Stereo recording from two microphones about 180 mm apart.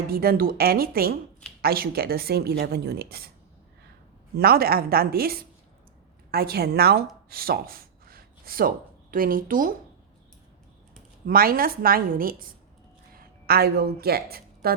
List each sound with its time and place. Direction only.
0.1 s speech: 55° right (ahead or behind)
4.4 s speech: 55° right (ahead or behind)
11.3 s a woman's voice: 55° right (ahead or behind)